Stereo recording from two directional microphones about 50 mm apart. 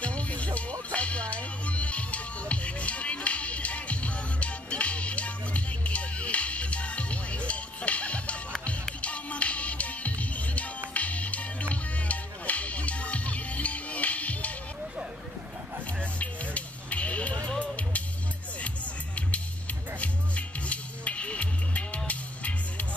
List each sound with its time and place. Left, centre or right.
0.0 s music: left
16.0 s music: left
20.0 s music: left